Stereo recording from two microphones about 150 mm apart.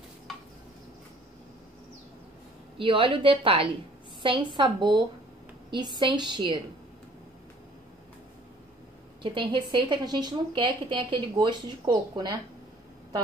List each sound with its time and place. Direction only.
2.8 s a woman's voice: 35° right (ahead or behind)
9.2 s a woman's voice: 35° right (ahead or behind)